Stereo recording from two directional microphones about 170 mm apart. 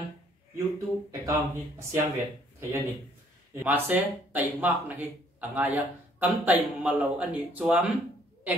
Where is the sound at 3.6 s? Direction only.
10° right (ahead or behind).